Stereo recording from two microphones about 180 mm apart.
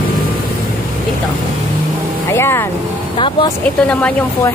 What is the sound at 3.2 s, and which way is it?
Speech, 25° left (ahead or behind).